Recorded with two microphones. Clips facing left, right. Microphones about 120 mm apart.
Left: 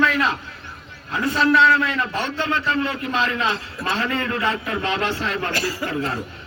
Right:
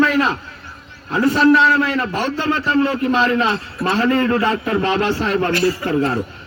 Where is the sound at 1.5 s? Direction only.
25° right (ahead or behind).